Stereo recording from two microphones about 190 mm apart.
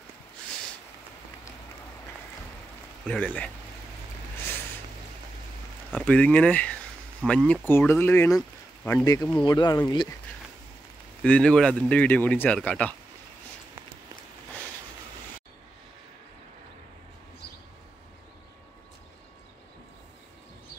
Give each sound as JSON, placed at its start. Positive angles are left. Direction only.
{"t": 3.1, "sound": "speech", "side_deg": 5}
{"t": 5.9, "sound": "speech", "side_deg": 5}
{"t": 8.4, "sound": "a sound", "side_deg": 10}
{"t": 9.0, "sound": "speech", "side_deg": 20}
{"t": 11.2, "sound": "speech", "side_deg": 5}